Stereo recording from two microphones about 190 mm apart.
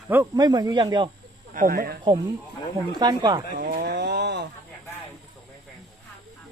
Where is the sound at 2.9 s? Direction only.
20° right (ahead or behind).